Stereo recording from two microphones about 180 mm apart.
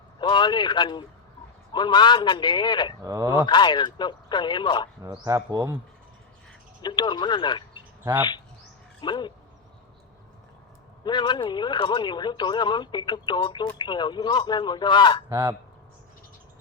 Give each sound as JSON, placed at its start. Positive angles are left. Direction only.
{"t": 0.2, "sound": "a man's voice", "side_deg": 25}
{"t": 3.0, "sound": "speech", "side_deg": -20}
{"t": 3.4, "sound": "speech", "side_deg": 25}
{"t": 5.2, "sound": "speech", "side_deg": -20}
{"t": 6.8, "sound": "speech", "side_deg": 25}
{"t": 9.0, "sound": "a sound", "side_deg": 25}
{"t": 11.0, "sound": "speech", "side_deg": 25}
{"t": 15.3, "sound": "goose", "side_deg": -10}